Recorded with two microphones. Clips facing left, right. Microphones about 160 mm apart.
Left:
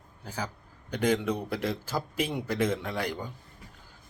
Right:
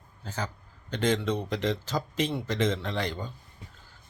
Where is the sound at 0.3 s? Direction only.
10° left (ahead or behind).